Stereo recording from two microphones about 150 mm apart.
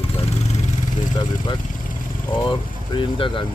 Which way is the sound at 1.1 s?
30° left (ahead or behind).